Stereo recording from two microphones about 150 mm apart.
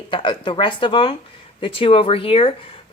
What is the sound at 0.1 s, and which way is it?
Speech, 35° left (ahead or behind).